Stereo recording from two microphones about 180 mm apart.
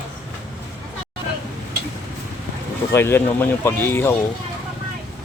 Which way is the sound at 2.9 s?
15° left (ahead or behind).